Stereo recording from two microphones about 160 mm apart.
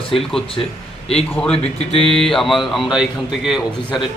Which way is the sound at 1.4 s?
5° left (ahead or behind).